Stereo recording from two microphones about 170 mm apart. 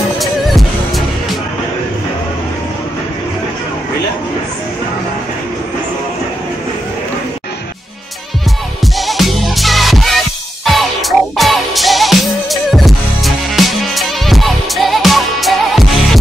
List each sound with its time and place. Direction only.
0.2 s music: centre (ahead or behind)
8.8 s music: centre (ahead or behind)